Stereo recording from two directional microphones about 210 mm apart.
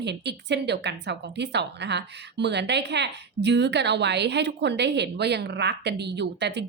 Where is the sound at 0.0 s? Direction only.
55° right (ahead or behind).